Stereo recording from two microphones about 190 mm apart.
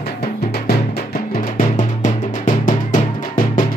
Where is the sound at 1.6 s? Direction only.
40° left (ahead or behind).